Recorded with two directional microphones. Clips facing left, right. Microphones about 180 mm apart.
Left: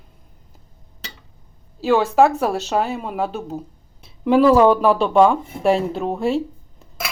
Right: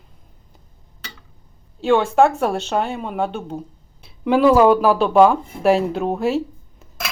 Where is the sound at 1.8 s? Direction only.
5° left (ahead or behind).